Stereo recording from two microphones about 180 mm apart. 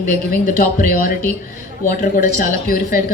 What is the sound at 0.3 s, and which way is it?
Speech, 50° left (ahead or behind).